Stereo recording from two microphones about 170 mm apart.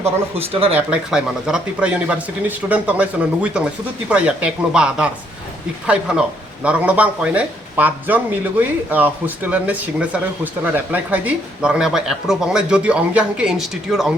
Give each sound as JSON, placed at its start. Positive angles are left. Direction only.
{"t": 0.3, "sound": "speech", "side_deg": -35}
{"t": 0.8, "sound": "speech", "side_deg": -5}